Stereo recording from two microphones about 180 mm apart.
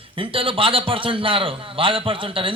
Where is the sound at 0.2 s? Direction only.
30° right (ahead or behind).